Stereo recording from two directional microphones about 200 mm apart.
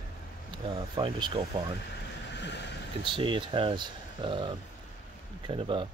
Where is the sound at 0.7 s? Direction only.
25° right (ahead or behind).